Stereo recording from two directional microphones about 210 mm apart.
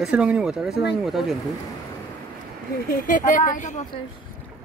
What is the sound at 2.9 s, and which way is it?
Speech, 40° left (ahead or behind).